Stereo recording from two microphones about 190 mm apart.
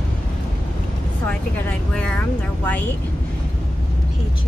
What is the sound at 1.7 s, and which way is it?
Speech, 10° left (ahead or behind).